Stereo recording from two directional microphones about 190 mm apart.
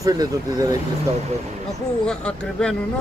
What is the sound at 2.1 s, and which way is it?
Speech, 5° left (ahead or behind).